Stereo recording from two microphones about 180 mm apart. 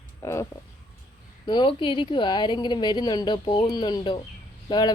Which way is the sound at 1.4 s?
25° left (ahead or behind).